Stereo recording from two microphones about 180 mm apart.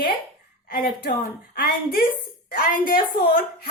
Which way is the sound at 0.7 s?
55° left (ahead or behind).